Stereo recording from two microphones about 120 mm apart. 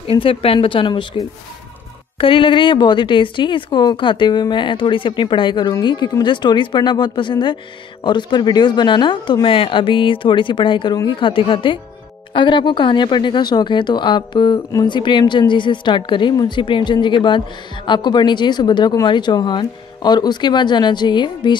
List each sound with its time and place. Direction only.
0.0 s a woman's voice: 50° left (ahead or behind)
2.1 s a woman's voice: 50° left (ahead or behind)